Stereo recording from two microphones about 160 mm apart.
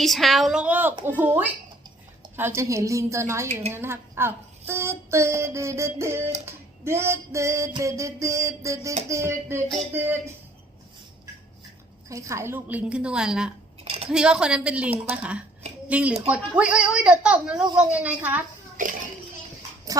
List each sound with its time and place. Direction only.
0.0 s a woman's voice: centre (ahead or behind)
1.2 s child singing: 10° right (ahead or behind)
6.4 s a sound: 15° right (ahead or behind)
9.0 s child singing: 15° right (ahead or behind)
12.0 s child singing: 20° right (ahead or behind); by 13.5 s 5° right (ahead or behind)
13.8 s cutlery: 40° right (ahead or behind)
14.1 s child singing: 5° right (ahead or behind)
19.9 s horse: 20° right (ahead or behind)